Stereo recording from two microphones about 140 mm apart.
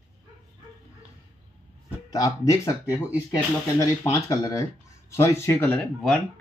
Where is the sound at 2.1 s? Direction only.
25° left (ahead or behind); by 6.2 s 5° left (ahead or behind).